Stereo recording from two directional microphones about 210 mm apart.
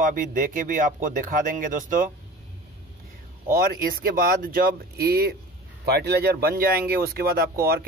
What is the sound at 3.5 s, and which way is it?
Speech, 45° right (ahead or behind).